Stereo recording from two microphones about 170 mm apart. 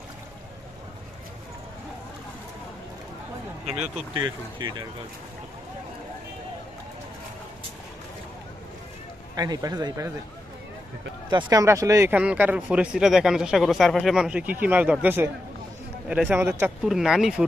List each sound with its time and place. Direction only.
3.6 s speech: 5° right (ahead or behind)
3.9 s speech: 30° right (ahead or behind)
9.3 s speech: 20° right (ahead or behind)
11.4 s speech: 15° right (ahead or behind)
16.8 s speech: 5° right (ahead or behind)